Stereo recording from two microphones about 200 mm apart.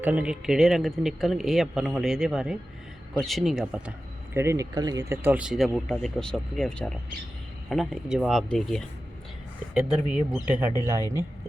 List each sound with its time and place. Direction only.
0.0 s speech: 5° right (ahead or behind)
4.4 s speech: 15° right (ahead or behind)